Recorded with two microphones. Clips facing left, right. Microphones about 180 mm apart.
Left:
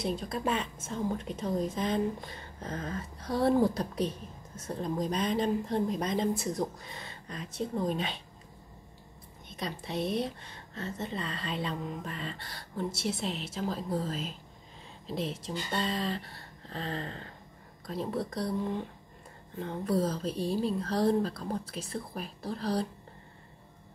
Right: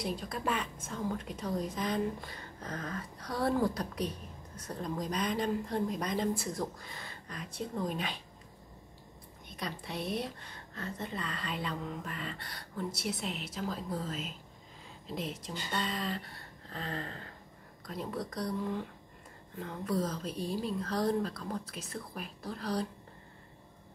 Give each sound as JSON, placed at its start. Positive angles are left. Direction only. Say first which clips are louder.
{"t": 0.0, "sound": "a woman's voice", "louder": "left 3 dB", "side_deg": 25}
{"t": 9.6, "sound": "a woman's voice", "louder": "left 5 dB", "side_deg": 25}